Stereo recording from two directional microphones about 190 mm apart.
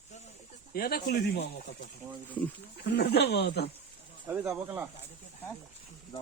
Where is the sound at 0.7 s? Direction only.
55° left (ahead or behind).